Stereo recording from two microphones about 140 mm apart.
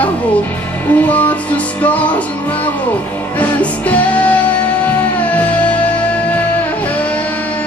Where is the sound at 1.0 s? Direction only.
10° left (ahead or behind).